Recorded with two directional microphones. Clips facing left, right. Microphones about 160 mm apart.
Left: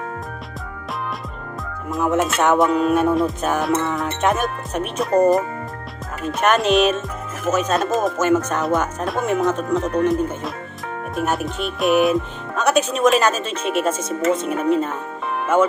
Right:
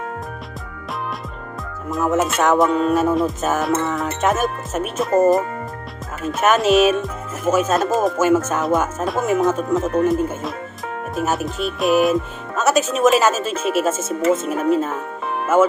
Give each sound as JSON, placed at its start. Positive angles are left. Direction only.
{"t": 1.9, "sound": "speech", "side_deg": 0}